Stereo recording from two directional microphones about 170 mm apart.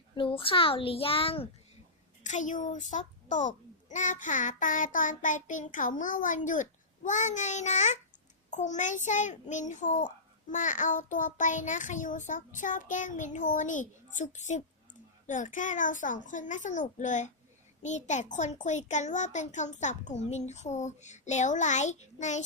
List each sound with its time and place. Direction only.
0.1 s a child's voice: 30° left (ahead or behind)
2.2 s a child's voice: 45° left (ahead or behind)